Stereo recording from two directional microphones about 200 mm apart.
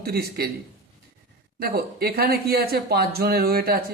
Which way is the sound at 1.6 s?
50° right (ahead or behind).